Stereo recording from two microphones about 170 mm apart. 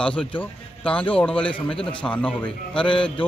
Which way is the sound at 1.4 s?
30° left (ahead or behind).